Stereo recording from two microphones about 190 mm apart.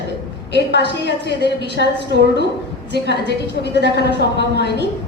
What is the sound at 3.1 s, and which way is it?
Speech, 65° left (ahead or behind).